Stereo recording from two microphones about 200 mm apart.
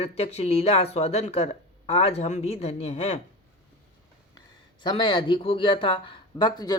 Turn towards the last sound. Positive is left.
turn(degrees=20)  # may be behind; listen again after turning